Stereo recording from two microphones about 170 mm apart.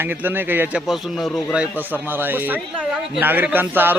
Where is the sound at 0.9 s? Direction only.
Centre (ahead or behind).